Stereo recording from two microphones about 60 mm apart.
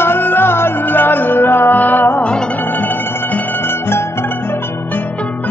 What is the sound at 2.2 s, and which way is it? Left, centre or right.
Music, centre.